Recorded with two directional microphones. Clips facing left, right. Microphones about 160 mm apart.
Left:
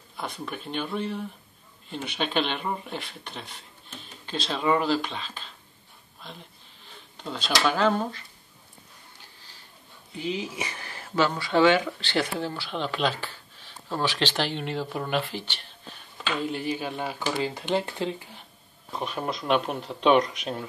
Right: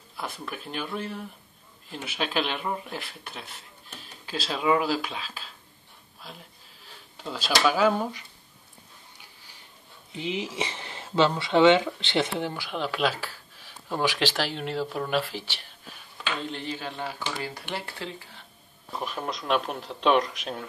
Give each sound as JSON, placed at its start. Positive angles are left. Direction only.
{"t": 0.2, "sound": "speech", "side_deg": -5}
{"t": 10.1, "sound": "speech", "side_deg": -20}
{"t": 16.4, "sound": "speech", "side_deg": 10}
{"t": 18.9, "sound": "speech", "side_deg": 0}